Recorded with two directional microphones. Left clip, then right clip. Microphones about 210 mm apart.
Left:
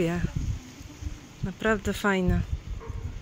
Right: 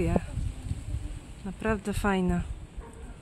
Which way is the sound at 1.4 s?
5° left (ahead or behind).